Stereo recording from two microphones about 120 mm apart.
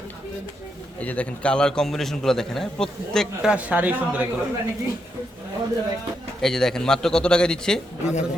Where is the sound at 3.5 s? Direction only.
10° right (ahead or behind).